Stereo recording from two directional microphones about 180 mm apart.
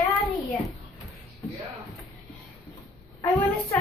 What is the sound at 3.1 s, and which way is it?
Speech, 15° left (ahead or behind).